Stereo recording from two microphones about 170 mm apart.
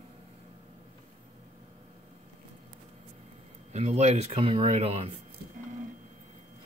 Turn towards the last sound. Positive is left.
turn(degrees=-35)  # may be behind; listen again after turning